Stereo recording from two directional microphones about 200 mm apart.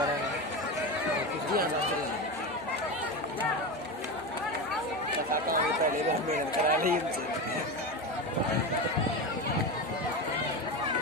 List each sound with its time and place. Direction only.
6.3 s speech: 45° right (ahead or behind)